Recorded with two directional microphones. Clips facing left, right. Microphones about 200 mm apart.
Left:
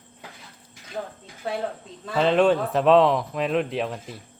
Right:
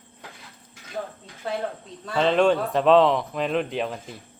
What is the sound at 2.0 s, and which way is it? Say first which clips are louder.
Speech: left 1 dB; centre (ahead or behind).